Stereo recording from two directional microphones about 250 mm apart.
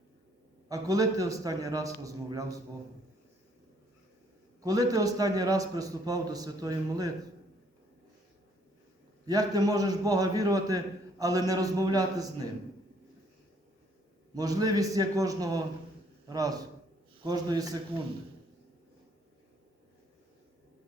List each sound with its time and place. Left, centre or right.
0.7 s a man's voice: centre
4.6 s a man's voice: centre
9.2 s a man's voice: centre
14.3 s a man's voice: centre